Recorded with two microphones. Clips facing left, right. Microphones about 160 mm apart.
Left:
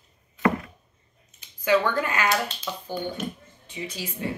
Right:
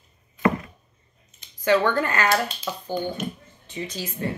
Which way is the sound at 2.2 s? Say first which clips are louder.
Right 2 dB; 10° right (ahead or behind).